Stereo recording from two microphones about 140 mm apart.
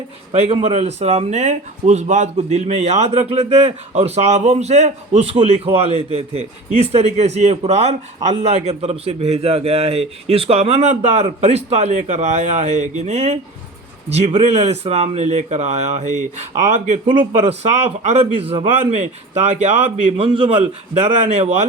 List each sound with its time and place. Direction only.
0.3 s speech: 45° right (ahead or behind)
17.1 s speech: 50° right (ahead or behind)